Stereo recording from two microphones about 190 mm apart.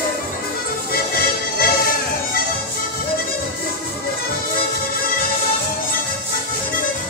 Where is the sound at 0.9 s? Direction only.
50° left (ahead or behind).